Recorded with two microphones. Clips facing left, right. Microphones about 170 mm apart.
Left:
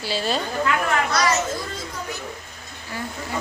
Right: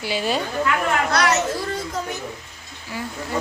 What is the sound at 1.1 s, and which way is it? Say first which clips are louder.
Speech: right 2 dB; 70° right (ahead or behind).